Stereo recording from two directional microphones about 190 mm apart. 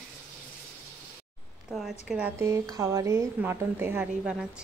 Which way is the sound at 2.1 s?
10° right (ahead or behind).